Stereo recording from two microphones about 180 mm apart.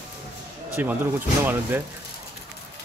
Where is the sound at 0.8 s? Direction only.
10° right (ahead or behind).